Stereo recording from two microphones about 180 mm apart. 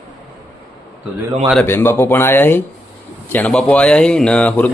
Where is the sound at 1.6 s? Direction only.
10° left (ahead or behind).